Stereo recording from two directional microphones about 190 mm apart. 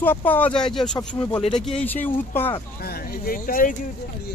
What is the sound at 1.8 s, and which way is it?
Speech, 10° left (ahead or behind).